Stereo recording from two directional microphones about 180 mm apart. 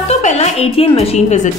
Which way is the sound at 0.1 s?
40° left (ahead or behind).